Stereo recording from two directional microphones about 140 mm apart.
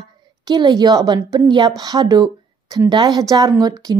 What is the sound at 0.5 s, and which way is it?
A woman's voice, 35° right (ahead or behind).